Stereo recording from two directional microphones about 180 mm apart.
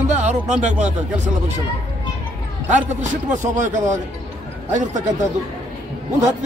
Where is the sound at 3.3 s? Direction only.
45° right (ahead or behind).